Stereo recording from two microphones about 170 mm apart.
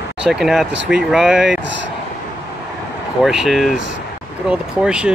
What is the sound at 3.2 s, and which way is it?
Speech, centre (ahead or behind).